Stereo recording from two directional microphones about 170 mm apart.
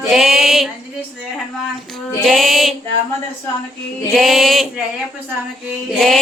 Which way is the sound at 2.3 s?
Centre (ahead or behind).